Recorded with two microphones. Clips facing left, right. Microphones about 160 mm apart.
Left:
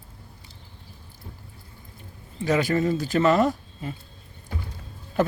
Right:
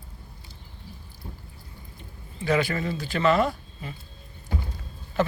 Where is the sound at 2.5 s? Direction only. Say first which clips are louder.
Left 3 dB; 40° left (ahead or behind).